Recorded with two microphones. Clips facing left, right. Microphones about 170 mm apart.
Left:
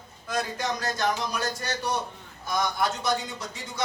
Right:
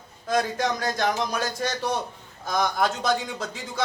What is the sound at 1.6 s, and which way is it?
A man's voice, 90° right.